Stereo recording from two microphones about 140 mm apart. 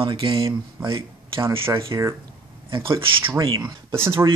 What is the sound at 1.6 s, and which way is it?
Speech, 20° right (ahead or behind).